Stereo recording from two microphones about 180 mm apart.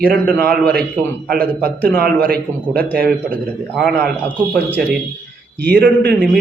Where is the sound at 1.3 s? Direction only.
55° right (ahead or behind).